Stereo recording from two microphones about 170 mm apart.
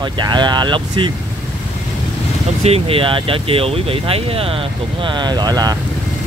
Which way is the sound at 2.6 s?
35° right (ahead or behind).